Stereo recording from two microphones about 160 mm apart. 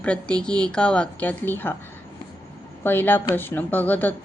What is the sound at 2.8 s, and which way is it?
Speech, 10° left (ahead or behind).